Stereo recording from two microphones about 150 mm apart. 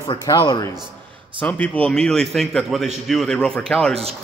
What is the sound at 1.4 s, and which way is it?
A man's voice, 10° left (ahead or behind).